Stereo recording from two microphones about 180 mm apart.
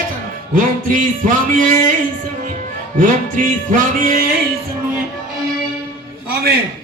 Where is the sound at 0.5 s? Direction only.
50° right (ahead or behind).